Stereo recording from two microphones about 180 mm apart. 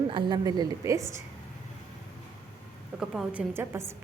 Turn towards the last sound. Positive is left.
turn(degrees=-15)  # may be behind; listen again after turning